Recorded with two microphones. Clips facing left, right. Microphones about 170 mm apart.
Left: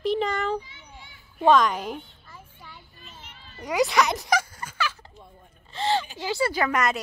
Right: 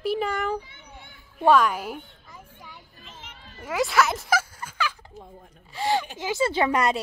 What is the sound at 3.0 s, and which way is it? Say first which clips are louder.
Children playing: right 3 dB; 90° right.